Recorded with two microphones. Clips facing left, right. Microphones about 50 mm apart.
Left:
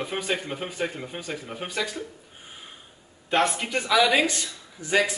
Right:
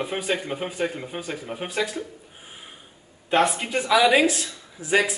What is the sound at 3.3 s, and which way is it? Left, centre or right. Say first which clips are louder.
Speech: right 2 dB; centre.